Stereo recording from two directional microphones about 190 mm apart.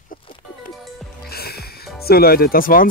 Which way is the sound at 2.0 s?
55° left (ahead or behind).